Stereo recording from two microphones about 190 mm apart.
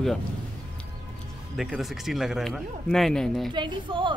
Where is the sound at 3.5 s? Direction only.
25° right (ahead or behind).